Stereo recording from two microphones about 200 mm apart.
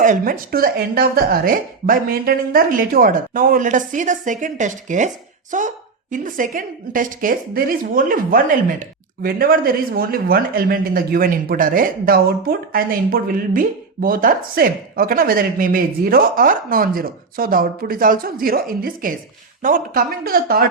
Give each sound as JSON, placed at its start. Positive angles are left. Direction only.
{"t": 0.0, "sound": "speech", "side_deg": -40}